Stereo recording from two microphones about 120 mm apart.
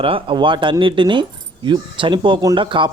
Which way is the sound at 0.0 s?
50° right (ahead or behind).